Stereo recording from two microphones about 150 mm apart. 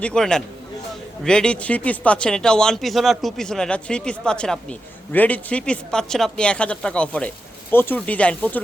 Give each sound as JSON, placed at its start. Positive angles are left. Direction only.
{"t": 0.0, "sound": "speech", "side_deg": 5}